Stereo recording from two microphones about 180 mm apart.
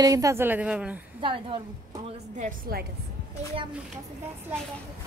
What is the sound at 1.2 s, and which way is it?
Speech, 30° right (ahead or behind).